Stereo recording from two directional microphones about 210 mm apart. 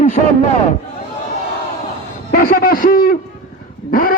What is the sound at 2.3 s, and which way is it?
A man's voice, 45° left (ahead or behind).